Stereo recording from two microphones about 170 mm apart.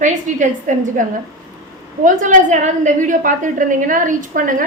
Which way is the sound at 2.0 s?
50° right (ahead or behind).